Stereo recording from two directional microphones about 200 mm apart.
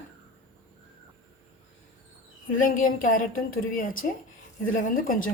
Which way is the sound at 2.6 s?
45° left (ahead or behind).